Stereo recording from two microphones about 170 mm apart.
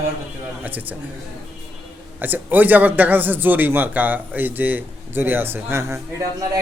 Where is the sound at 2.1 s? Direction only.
10° right (ahead or behind).